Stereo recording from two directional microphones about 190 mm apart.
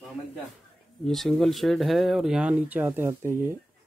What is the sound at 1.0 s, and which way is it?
Speech, centre (ahead or behind).